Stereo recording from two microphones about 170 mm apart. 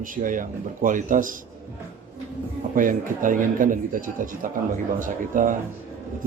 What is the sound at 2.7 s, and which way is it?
Speech, 50° right (ahead or behind).